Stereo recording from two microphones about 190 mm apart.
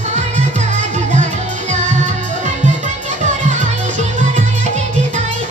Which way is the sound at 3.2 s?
40° right (ahead or behind).